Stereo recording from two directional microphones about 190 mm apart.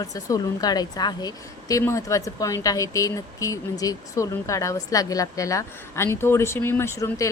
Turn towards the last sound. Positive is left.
turn(degrees=15)  # may be behind; listen again after turning